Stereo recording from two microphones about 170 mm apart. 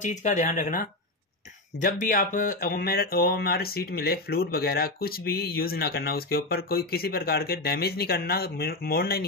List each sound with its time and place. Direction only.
0.0 s speech: 45° left (ahead or behind); by 9.2 s 65° left (ahead or behind)